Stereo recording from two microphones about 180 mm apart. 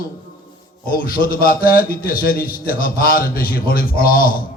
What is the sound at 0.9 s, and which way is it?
A man's voice, 55° left (ahead or behind).